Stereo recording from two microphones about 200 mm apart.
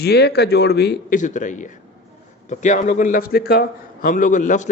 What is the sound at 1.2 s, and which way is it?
A man's voice, 40° left (ahead or behind).